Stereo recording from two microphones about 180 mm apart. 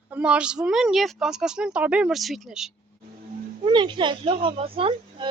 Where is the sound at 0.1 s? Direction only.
5° right (ahead or behind).